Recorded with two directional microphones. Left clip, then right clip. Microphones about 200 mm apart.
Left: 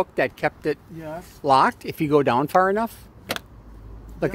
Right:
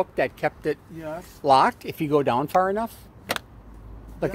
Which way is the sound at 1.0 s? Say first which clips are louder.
Right 1 dB; 10° left (ahead or behind).